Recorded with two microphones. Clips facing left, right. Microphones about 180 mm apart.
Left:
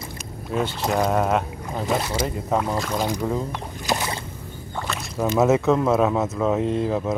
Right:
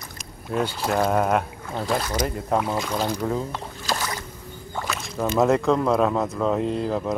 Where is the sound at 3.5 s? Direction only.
20° left (ahead or behind).